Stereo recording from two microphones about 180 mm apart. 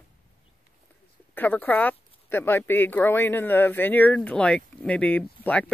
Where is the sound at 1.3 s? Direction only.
10° left (ahead or behind).